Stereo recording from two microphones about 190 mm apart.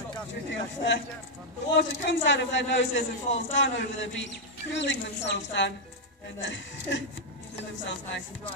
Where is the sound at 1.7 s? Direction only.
75° left (ahead or behind).